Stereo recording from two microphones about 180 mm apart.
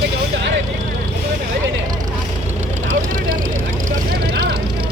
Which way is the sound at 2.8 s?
50° right (ahead or behind).